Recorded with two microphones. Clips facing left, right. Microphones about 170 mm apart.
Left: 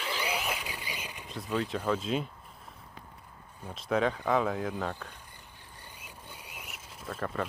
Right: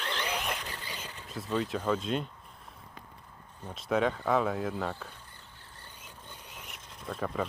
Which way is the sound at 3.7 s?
Centre (ahead or behind).